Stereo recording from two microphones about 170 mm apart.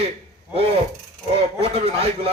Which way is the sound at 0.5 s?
35° right (ahead or behind).